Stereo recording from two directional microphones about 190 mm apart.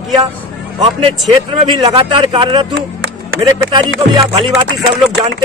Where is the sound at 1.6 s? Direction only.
25° right (ahead or behind).